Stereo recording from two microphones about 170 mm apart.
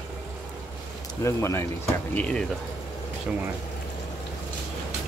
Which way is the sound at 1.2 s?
15° left (ahead or behind).